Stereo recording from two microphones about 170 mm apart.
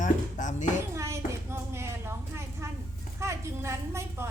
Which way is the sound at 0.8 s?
15° right (ahead or behind).